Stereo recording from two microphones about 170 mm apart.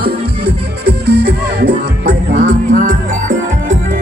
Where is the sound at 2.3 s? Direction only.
45° right (ahead or behind).